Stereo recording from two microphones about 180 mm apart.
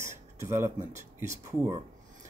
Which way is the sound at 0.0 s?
15° right (ahead or behind).